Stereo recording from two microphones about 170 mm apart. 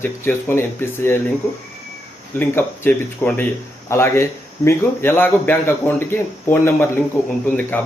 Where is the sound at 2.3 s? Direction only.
10° left (ahead or behind).